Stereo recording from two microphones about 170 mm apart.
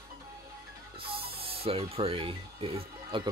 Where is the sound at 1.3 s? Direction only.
35° right (ahead or behind).